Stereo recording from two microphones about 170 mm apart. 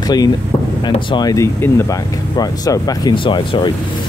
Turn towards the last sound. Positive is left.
turn(degrees=30)  # may be behind; listen again after turning